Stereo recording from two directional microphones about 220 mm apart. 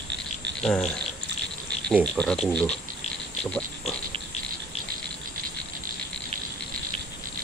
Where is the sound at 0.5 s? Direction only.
5° left (ahead or behind).